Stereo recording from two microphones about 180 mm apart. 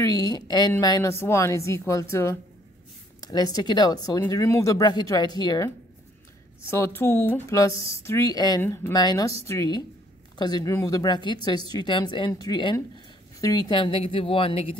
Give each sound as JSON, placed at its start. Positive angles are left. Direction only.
{"t": 0.0, "sound": "a woman's voice", "side_deg": 20}